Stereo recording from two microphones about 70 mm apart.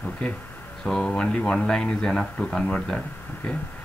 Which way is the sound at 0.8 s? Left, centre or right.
Centre.